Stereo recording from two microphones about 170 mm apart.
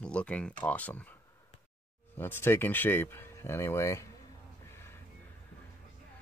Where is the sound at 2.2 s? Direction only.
15° left (ahead or behind).